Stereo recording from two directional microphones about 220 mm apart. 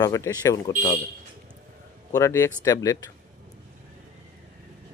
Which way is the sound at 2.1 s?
15° left (ahead or behind).